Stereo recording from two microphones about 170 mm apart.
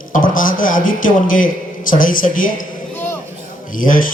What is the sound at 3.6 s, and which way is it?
Speech, 50° left (ahead or behind).